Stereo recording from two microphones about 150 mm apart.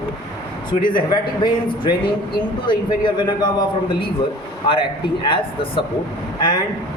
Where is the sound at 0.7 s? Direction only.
35° left (ahead or behind).